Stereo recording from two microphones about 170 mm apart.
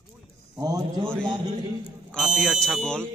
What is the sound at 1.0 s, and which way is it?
Speech, 5° left (ahead or behind).